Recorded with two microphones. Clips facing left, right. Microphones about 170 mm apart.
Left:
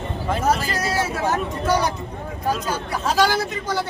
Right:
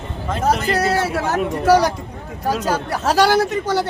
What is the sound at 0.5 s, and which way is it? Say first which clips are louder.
Speech: right 5 dB; 65° right (ahead or behind).